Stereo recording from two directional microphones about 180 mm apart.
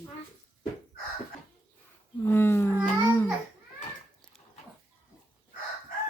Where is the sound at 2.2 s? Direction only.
15° left (ahead or behind).